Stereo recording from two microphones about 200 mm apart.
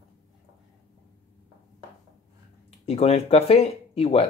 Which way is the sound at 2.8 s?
30° left (ahead or behind).